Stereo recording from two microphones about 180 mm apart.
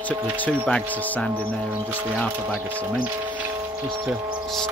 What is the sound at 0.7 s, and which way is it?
Speech, 10° left (ahead or behind).